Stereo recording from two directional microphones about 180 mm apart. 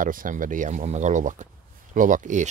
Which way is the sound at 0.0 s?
50° right (ahead or behind).